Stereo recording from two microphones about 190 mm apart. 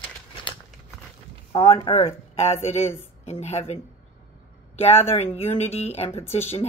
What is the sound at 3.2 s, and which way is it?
Speech, 35° left (ahead or behind).